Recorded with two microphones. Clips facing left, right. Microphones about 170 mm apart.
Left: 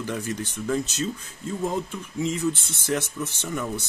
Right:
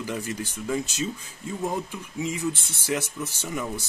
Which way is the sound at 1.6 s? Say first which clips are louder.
Left 1 dB; 5° right (ahead or behind).